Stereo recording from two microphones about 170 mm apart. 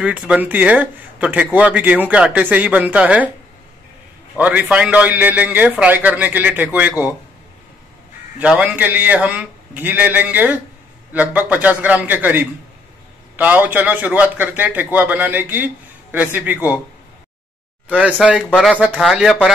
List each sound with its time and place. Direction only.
0.0 s a man's voice: 5° right (ahead or behind)
4.4 s a man's voice: 10° right (ahead or behind)
8.4 s a man's voice: 10° right (ahead or behind)
17.8 s speech: 10° right (ahead or behind)